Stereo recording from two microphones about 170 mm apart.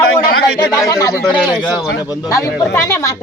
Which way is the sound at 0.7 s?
20° left (ahead or behind).